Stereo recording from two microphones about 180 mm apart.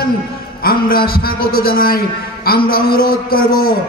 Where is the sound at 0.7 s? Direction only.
55° left (ahead or behind).